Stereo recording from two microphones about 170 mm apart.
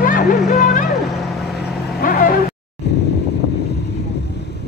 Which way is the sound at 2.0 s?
55° left (ahead or behind).